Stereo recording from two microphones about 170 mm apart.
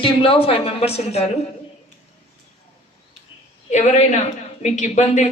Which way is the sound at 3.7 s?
40° left (ahead or behind).